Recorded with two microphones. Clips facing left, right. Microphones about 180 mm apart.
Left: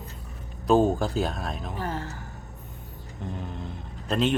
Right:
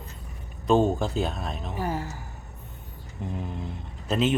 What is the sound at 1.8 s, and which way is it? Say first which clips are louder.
Speech: right 4 dB; 10° right (ahead or behind).